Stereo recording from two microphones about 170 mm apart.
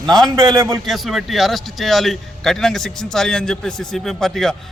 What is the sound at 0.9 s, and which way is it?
A man's voice, centre (ahead or behind).